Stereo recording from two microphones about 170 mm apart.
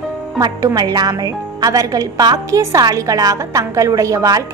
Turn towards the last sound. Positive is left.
turn(degrees=-20)  # may be behind; listen again after turning